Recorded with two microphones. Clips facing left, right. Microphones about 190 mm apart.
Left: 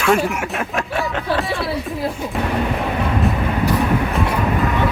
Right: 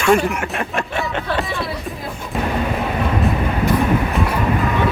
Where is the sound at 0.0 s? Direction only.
Centre (ahead or behind).